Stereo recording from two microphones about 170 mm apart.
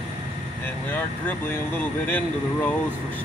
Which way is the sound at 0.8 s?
10° left (ahead or behind).